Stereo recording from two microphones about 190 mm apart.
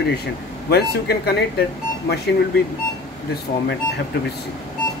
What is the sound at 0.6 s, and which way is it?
Speech, 55° left (ahead or behind).